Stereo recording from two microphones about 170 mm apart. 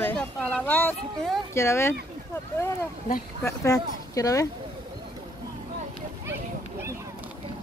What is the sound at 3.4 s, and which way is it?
Speech, 20° left (ahead or behind).